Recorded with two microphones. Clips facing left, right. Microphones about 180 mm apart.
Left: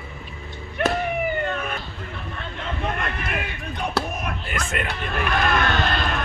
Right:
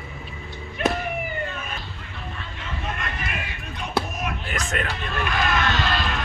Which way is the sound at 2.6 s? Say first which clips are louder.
Left 5 dB; 55° left (ahead or behind).